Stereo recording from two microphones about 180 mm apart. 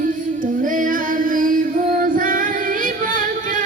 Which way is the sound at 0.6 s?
50° right (ahead or behind).